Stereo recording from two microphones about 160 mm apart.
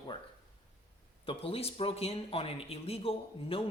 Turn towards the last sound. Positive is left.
turn(degrees=35)  # may be behind; listen again after turning